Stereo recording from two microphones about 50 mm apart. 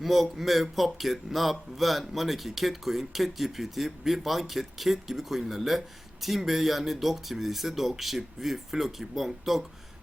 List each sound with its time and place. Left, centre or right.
0.0 s speech: centre